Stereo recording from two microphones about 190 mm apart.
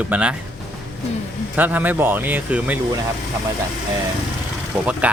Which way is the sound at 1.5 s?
10° right (ahead or behind).